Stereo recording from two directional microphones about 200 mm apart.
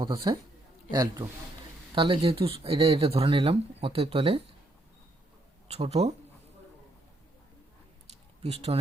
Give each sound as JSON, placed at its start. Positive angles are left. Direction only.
{"t": 0.0, "sound": "speech", "side_deg": -20}
{"t": 5.6, "sound": "speech", "side_deg": -30}
{"t": 8.4, "sound": "speech", "side_deg": -30}